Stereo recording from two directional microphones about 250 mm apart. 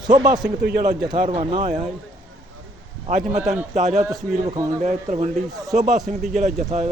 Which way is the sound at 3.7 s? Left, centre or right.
Right.